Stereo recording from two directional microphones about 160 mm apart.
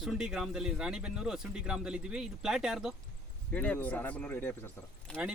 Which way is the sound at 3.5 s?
10° left (ahead or behind).